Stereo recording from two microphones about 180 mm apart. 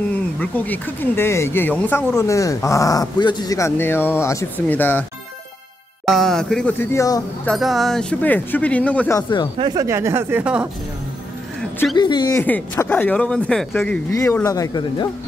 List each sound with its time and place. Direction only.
0.1 s speech: 10° left (ahead or behind)
6.0 s speech: centre (ahead or behind); by 7.2 s 20° left (ahead or behind)
7.4 s speech: centre (ahead or behind)
9.6 s speech: 20° right (ahead or behind); by 10.7 s 5° right (ahead or behind)
11.9 s speech: 25° left (ahead or behind)
12.4 s speech: 10° left (ahead or behind)